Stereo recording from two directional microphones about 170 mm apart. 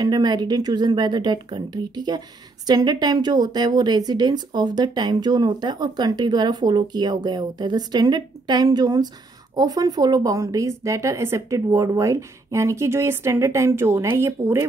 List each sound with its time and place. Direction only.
0.0 s a woman's voice: 25° right (ahead or behind)